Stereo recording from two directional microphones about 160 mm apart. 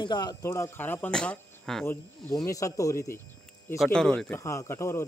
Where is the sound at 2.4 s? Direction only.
20° left (ahead or behind).